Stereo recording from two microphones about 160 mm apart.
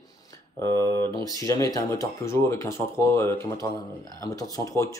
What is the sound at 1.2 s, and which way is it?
Speech, 20° left (ahead or behind).